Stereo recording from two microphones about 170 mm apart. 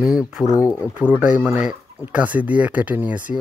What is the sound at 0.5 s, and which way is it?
Speech, 20° left (ahead or behind).